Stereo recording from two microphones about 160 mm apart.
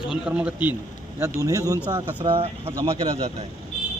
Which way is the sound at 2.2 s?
35° right (ahead or behind).